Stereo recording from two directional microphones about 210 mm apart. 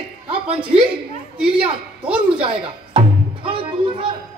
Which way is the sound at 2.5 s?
25° right (ahead or behind).